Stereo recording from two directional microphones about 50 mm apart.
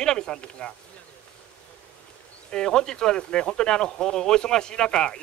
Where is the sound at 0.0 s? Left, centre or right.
Centre.